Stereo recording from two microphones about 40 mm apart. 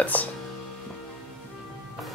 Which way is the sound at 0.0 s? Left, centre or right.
Left.